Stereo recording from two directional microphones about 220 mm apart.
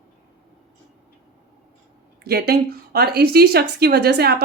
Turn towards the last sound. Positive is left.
turn(degrees=-45)  # may be behind; listen again after turning